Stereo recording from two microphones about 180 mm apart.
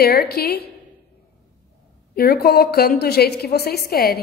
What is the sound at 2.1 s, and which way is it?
A woman's voice, 60° left (ahead or behind).